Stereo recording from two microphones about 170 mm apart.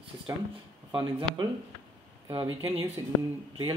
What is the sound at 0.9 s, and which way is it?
Speech, 25° right (ahead or behind).